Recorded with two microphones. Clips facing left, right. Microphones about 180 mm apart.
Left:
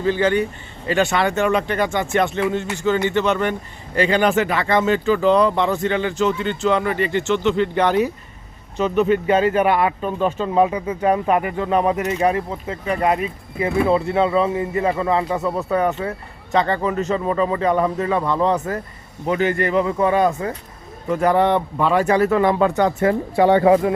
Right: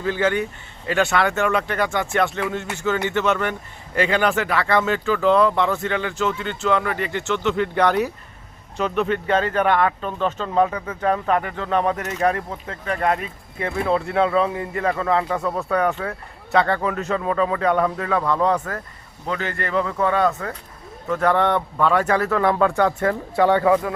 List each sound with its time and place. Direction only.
0.0 s speech: 5° right (ahead or behind)
4.6 s speech: 20° left (ahead or behind)
4.9 s speech: centre (ahead or behind)
7.8 s speech: 10° left (ahead or behind)
19.2 s speech: 15° left (ahead or behind)